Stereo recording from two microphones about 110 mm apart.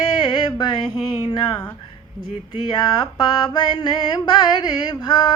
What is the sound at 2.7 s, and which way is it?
Child singing, 40° left (ahead or behind).